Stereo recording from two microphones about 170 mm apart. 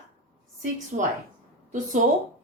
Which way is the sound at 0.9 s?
45° right (ahead or behind).